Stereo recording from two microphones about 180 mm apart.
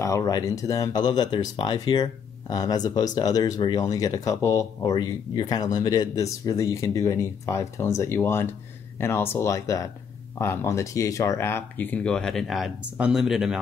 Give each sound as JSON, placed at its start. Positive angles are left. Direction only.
{"t": 0.0, "sound": "speech", "side_deg": 20}